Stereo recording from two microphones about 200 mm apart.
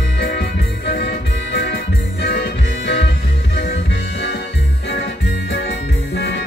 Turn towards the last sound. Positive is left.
turn(degrees=60)  # may be behind; listen again after turning